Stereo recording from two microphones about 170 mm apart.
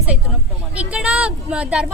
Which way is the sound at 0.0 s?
5° right (ahead or behind).